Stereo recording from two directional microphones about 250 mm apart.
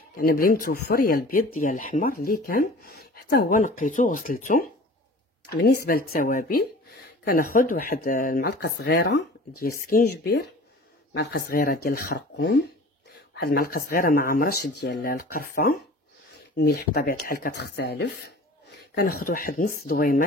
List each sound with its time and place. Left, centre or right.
0.1 s speech: left